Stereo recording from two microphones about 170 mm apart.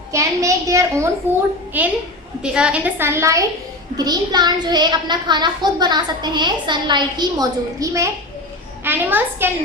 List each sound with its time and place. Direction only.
0.1 s a woman's voice: 20° right (ahead or behind)